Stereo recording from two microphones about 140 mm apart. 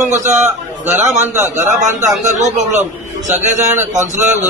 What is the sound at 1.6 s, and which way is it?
A man's voice, 60° right (ahead or behind).